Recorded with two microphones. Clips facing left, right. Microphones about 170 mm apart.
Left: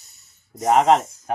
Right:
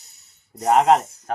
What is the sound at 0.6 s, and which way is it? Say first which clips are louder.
Speech: even; centre (ahead or behind).